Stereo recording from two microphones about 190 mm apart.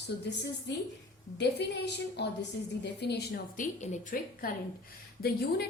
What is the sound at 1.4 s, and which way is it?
A woman's voice, 60° left (ahead or behind).